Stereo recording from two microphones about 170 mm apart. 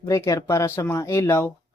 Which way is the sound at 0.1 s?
15° left (ahead or behind).